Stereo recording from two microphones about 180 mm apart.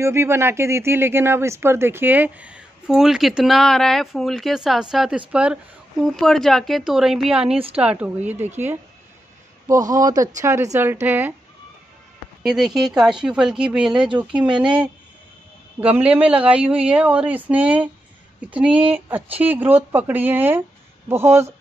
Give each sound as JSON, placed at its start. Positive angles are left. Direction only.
{"t": 0.0, "sound": "speech", "side_deg": -15}
{"t": 7.5, "sound": "a woman's voice", "side_deg": -30}
{"t": 7.8, "sound": "speech", "side_deg": -5}
{"t": 9.7, "sound": "a man's voice", "side_deg": -20}
{"t": 12.4, "sound": "speech", "side_deg": 0}